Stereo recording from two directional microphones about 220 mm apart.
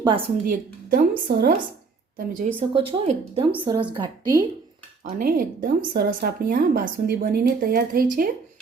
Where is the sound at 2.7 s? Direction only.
25° right (ahead or behind).